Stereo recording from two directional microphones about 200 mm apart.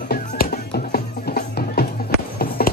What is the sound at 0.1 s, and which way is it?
Music, 50° left (ahead or behind).